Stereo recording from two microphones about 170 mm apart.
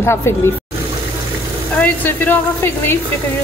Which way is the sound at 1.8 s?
10° left (ahead or behind).